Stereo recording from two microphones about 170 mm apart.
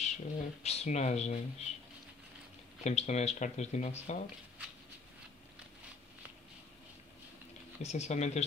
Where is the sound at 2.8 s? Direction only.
40° left (ahead or behind).